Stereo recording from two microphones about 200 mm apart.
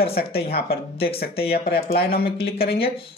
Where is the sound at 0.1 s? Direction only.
50° left (ahead or behind).